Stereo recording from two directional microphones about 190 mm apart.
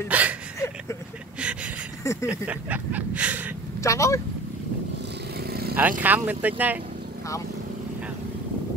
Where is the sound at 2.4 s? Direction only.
10° right (ahead or behind).